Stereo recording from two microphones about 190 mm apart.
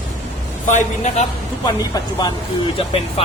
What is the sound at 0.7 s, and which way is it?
Speech, 40° left (ahead or behind).